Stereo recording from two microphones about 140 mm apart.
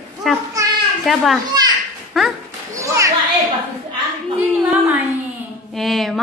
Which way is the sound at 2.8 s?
20° right (ahead or behind).